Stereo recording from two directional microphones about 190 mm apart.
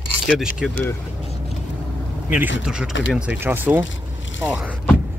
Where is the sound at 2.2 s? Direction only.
10° right (ahead or behind).